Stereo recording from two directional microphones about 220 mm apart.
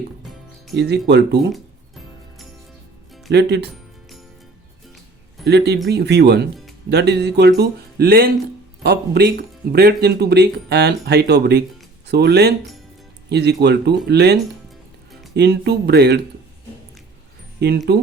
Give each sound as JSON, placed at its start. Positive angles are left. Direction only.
{"t": 0.8, "sound": "speech", "side_deg": -50}
{"t": 3.3, "sound": "speech", "side_deg": -50}
{"t": 5.5, "sound": "speech", "side_deg": -50}
{"t": 15.4, "sound": "speech", "side_deg": -50}
{"t": 17.6, "sound": "speech", "side_deg": -50}